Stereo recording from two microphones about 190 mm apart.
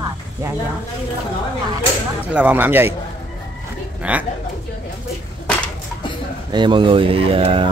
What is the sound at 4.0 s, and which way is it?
Speech, 5° right (ahead or behind).